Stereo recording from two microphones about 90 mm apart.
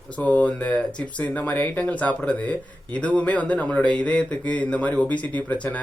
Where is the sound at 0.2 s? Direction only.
15° left (ahead or behind).